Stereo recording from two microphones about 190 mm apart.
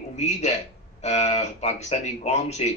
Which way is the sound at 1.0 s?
35° left (ahead or behind).